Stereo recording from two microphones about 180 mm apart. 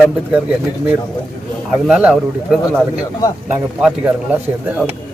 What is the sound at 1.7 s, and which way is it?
Speech, 5° right (ahead or behind).